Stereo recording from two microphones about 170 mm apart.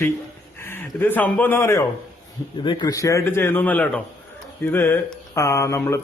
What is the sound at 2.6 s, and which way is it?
Speech, 25° left (ahead or behind).